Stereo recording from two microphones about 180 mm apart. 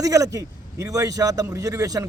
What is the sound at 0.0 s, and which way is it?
A man's voice, 20° right (ahead or behind).